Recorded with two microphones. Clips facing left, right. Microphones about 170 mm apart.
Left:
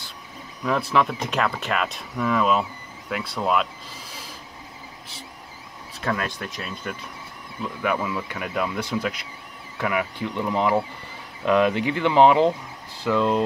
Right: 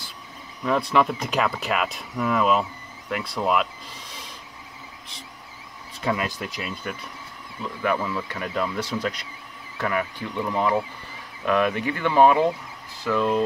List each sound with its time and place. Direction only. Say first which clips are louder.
0.7 s speech: right 1 dB; centre (ahead or behind)
6.0 s speech: right 1 dB; 5° right (ahead or behind)
7.8 s speech: right 1 dB; 10° left (ahead or behind)